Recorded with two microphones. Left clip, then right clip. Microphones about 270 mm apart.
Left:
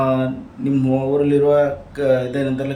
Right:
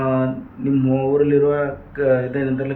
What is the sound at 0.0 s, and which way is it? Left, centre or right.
Speech, centre.